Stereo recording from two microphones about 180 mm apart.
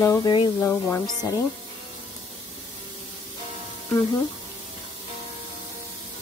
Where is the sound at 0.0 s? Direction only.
20° left (ahead or behind).